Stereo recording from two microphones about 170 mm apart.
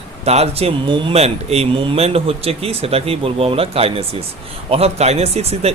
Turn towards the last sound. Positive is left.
turn(degrees=-40)  # may be behind; listen again after turning